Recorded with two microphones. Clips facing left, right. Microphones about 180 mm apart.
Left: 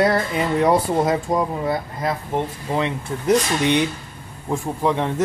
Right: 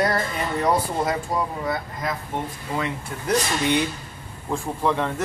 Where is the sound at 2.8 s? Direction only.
20° left (ahead or behind).